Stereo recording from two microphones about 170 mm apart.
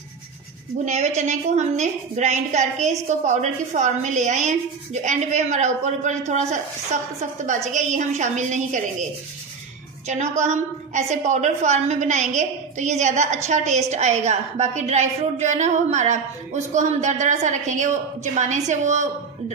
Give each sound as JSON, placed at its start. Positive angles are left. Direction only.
{"t": 0.8, "sound": "a woman's voice", "side_deg": -45}
{"t": 10.0, "sound": "a woman's voice", "side_deg": -40}